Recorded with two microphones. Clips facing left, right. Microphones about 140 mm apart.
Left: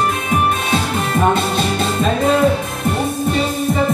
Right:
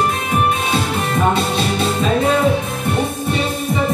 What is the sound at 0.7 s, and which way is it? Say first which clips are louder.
Music: left 1 dB; centre (ahead or behind).